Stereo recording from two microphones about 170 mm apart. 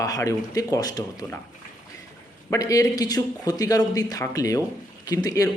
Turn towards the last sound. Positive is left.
turn(degrees=20)  # may be behind; listen again after turning